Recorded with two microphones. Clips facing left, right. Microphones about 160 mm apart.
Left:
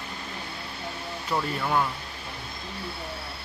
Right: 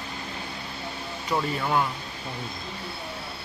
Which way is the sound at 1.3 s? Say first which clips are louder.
Right 1 dB; 5° right (ahead or behind).